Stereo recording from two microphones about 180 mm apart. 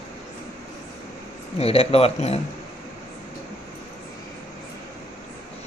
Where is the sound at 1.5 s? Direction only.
35° left (ahead or behind).